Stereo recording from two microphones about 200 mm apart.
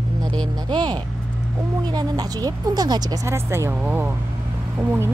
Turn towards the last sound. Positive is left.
turn(degrees=-10)  # may be behind; listen again after turning